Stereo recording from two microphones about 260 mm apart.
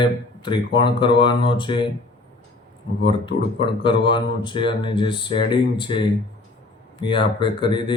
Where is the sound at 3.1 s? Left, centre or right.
Centre.